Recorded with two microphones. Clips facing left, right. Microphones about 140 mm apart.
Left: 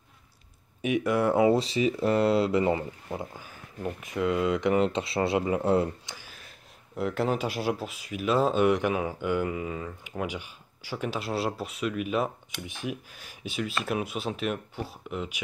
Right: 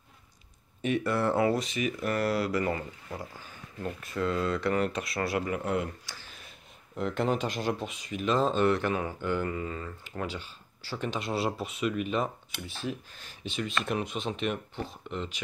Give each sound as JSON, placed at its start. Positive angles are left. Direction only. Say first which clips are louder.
{"t": 0.8, "sound": "speech", "louder": "left 3 dB", "side_deg": 10}
{"t": 1.5, "sound": "speech", "louder": "left 5 dB", "side_deg": 30}
{"t": 3.3, "sound": "speech", "louder": "left 2 dB", "side_deg": 10}
{"t": 6.1, "sound": "a sound", "louder": "left 2 dB", "side_deg": 10}
{"t": 7.0, "sound": "speech", "louder": "left 1 dB", "side_deg": 5}
{"t": 12.6, "sound": "speech", "louder": "left 1 dB", "side_deg": 15}